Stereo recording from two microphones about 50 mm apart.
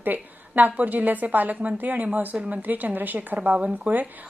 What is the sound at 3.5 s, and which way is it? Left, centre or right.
Speech, right.